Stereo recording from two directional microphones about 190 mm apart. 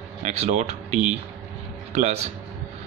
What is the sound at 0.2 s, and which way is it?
A man's voice, 35° right (ahead or behind).